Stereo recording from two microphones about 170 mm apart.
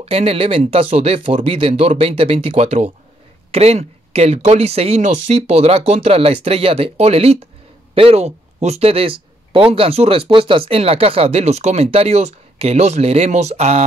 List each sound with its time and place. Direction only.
0.0 s speech: 35° right (ahead or behind)